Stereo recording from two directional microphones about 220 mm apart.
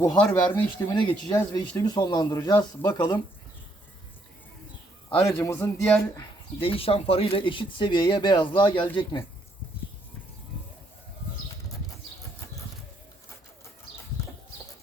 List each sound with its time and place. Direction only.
0.0 s speech: 10° left (ahead or behind)
5.0 s speech: 10° left (ahead or behind)
6.6 s speech: 25° left (ahead or behind)